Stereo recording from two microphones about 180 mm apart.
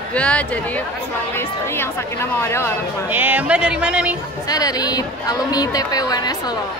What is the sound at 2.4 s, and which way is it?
Speech, 15° left (ahead or behind).